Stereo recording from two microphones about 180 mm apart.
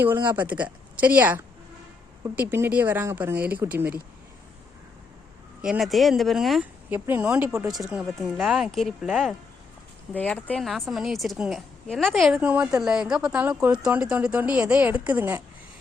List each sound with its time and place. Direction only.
0.3 s a woman's voice: 10° right (ahead or behind)
5.6 s a woman's voice: centre (ahead or behind)
7.7 s a woman's voice: centre (ahead or behind)